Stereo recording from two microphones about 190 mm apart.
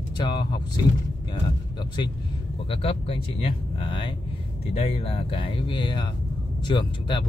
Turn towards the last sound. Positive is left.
turn(degrees=25)  # may be behind; listen again after turning